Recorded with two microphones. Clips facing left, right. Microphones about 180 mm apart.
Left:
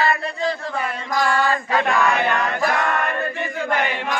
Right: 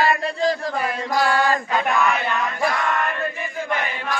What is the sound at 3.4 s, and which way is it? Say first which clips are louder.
Chant: left 3 dB; 70° left (ahead or behind).